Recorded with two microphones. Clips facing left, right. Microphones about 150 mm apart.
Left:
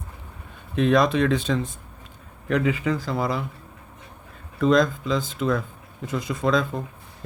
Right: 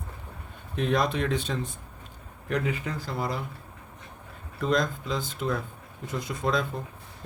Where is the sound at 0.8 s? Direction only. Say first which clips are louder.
Left 7 dB; 90° left.